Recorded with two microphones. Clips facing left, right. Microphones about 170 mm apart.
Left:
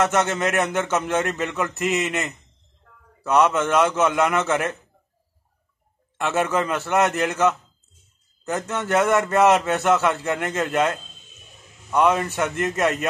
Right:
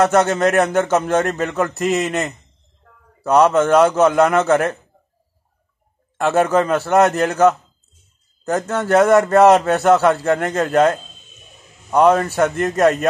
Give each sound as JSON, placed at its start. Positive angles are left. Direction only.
{"t": 0.0, "sound": "a man's voice", "side_deg": -35}
{"t": 6.2, "sound": "a man's voice", "side_deg": -35}
{"t": 8.5, "sound": "a man's voice", "side_deg": -35}